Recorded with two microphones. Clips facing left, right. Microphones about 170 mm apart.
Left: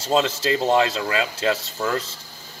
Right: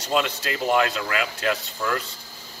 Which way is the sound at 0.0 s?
30° left (ahead or behind).